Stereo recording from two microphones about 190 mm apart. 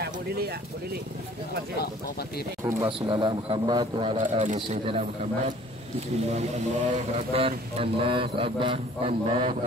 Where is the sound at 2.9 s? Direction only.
25° right (ahead or behind).